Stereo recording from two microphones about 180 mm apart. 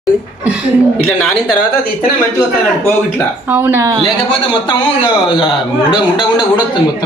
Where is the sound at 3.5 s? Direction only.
10° right (ahead or behind).